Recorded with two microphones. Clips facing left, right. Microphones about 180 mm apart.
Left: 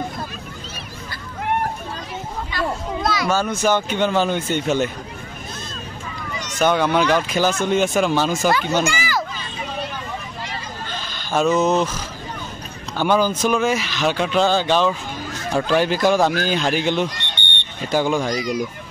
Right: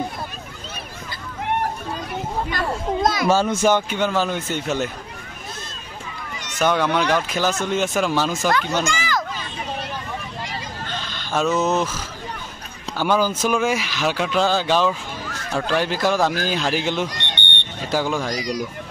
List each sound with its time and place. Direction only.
2.5 s children playing: 50° right (ahead or behind)
3.3 s speech: 25° right (ahead or behind); by 4.9 s centre (ahead or behind)
6.6 s speech: 5° left (ahead or behind)
10.9 s fowl: 5° left (ahead or behind)
12.9 s speech: 5° right (ahead or behind)